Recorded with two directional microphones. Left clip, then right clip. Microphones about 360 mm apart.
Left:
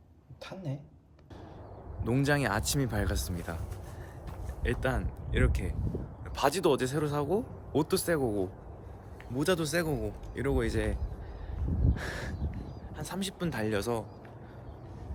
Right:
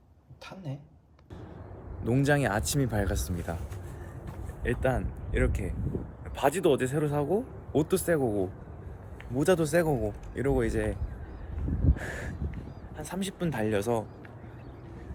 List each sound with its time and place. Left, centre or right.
0.4 s speech: centre
2.0 s speech: centre
11.9 s speech: centre